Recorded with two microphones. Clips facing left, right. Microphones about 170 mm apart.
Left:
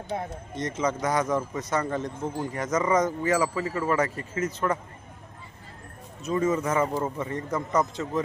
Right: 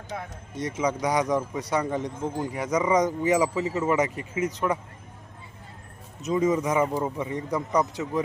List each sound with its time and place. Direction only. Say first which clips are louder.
0.1 s speech: left 4 dB; 40° left (ahead or behind)
0.5 s speech: right 1 dB; 10° right (ahead or behind)
6.2 s speech: right 2 dB; 15° right (ahead or behind)